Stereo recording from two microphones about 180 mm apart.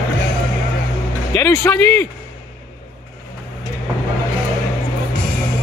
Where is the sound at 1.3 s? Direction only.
15° left (ahead or behind).